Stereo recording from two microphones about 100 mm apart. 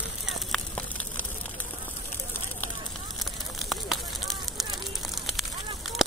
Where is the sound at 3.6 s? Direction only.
Centre (ahead or behind).